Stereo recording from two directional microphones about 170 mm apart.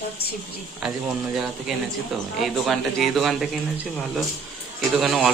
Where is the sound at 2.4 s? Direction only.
Centre (ahead or behind).